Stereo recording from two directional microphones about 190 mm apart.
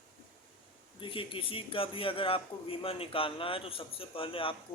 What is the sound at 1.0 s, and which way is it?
A man's voice, 25° left (ahead or behind).